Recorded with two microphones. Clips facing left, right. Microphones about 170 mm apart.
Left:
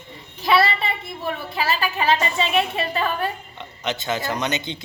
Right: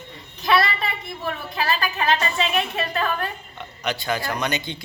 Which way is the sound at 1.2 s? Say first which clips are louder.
Left 1 dB; 5° left (ahead or behind).